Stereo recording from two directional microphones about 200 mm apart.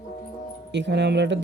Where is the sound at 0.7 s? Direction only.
60° right (ahead or behind).